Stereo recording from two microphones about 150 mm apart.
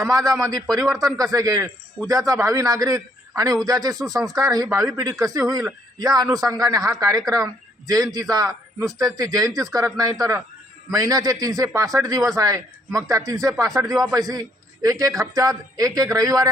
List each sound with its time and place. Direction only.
0.3 s a man's voice: 20° right (ahead or behind)